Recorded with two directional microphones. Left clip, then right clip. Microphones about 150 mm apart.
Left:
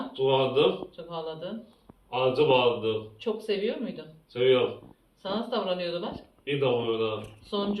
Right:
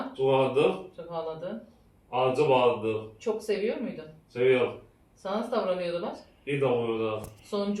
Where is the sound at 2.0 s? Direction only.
20° right (ahead or behind).